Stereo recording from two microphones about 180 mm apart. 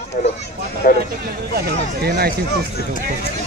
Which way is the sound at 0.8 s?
50° left (ahead or behind).